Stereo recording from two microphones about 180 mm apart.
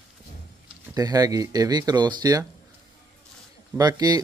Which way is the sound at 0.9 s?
20° right (ahead or behind).